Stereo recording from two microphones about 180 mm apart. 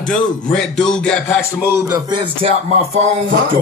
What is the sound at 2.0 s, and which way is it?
Speech, 25° right (ahead or behind).